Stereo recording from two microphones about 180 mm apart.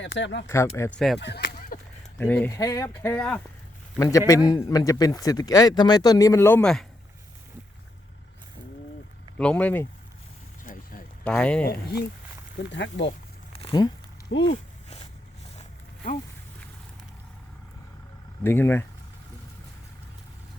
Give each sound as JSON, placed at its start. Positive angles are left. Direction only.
{"t": 0.0, "sound": "speech", "side_deg": 90}
{"t": 0.4, "sound": "speech", "side_deg": 15}
{"t": 0.9, "sound": "speech", "side_deg": 0}
{"t": 1.2, "sound": "a sound", "side_deg": 70}
{"t": 2.1, "sound": "speech", "side_deg": 10}
{"t": 9.4, "sound": "speech", "side_deg": 5}
{"t": 10.6, "sound": "vehicle", "side_deg": 50}
{"t": 11.2, "sound": "speech", "side_deg": 5}
{"t": 12.5, "sound": "speech", "side_deg": 80}
{"t": 13.5, "sound": "crumpling", "side_deg": 30}
{"t": 14.4, "sound": "a sound", "side_deg": 35}
{"t": 18.4, "sound": "speech", "side_deg": 10}